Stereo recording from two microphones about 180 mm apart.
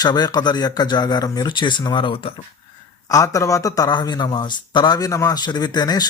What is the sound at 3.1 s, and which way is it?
Speech, 20° left (ahead or behind).